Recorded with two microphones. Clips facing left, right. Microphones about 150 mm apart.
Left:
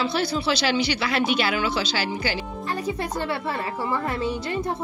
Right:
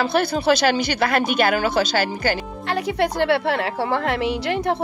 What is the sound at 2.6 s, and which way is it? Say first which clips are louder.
A woman's voice: right 7 dB; 80° right.